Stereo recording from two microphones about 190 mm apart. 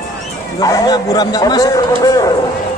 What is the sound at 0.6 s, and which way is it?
A man's voice, 20° left (ahead or behind).